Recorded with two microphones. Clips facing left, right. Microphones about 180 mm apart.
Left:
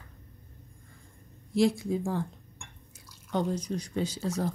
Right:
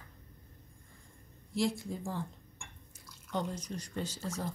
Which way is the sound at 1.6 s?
75° left (ahead or behind).